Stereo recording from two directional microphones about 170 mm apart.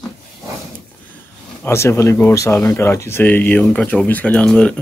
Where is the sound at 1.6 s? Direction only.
15° left (ahead or behind).